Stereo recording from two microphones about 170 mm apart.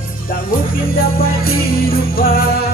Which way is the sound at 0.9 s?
60° left (ahead or behind).